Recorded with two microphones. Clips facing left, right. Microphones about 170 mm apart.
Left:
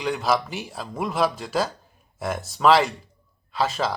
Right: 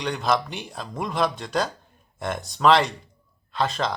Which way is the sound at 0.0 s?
5° left (ahead or behind).